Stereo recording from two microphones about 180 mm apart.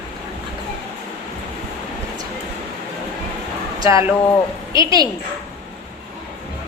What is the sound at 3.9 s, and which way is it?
A woman's voice, 15° right (ahead or behind).